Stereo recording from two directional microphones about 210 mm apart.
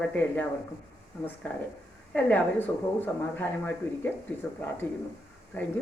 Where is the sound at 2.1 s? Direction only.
10° left (ahead or behind).